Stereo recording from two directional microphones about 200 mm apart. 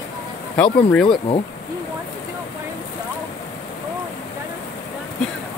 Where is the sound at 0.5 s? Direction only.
5° left (ahead or behind).